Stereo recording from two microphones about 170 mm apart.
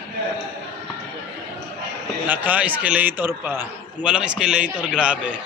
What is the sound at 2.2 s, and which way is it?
A man's voice, 10° right (ahead or behind).